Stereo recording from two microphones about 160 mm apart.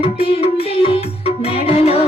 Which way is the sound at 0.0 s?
35° left (ahead or behind).